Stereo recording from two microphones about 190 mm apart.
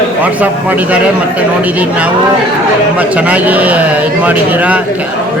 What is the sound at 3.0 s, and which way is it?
A man's voice, 10° right (ahead or behind).